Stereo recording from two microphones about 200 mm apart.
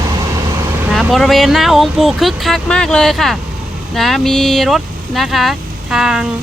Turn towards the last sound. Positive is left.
turn(degrees=-5)  # may be behind; listen again after turning